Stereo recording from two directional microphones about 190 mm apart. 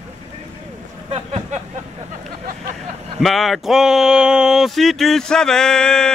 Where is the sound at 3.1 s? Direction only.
Centre (ahead or behind).